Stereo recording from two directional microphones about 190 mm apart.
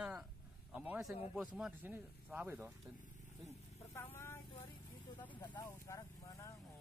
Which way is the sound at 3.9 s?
15° left (ahead or behind).